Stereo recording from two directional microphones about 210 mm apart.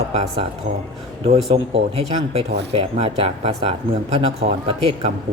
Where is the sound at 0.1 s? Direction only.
30° right (ahead or behind).